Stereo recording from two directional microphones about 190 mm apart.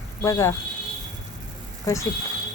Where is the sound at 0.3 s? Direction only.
15° left (ahead or behind).